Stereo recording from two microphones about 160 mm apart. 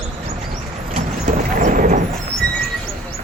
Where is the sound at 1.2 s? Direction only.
55° right (ahead or behind).